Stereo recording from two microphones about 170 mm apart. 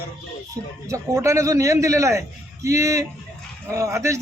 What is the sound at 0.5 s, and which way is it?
A man's voice, 20° right (ahead or behind).